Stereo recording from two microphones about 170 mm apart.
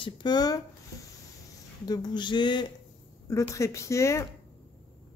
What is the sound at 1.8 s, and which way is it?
A woman's voice, 25° left (ahead or behind).